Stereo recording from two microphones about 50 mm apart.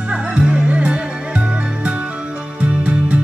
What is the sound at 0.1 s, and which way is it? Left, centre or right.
Music, centre.